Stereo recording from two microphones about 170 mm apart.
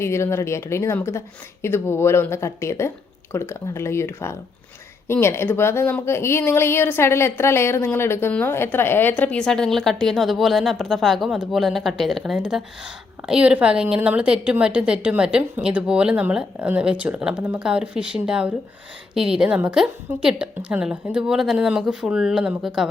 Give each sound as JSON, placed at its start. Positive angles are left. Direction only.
{"t": 0.0, "sound": "speech", "side_deg": 15}